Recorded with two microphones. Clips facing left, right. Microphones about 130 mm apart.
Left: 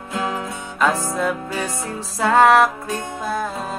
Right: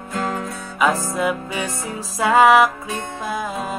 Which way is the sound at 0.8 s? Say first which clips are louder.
Even; 5° right (ahead or behind).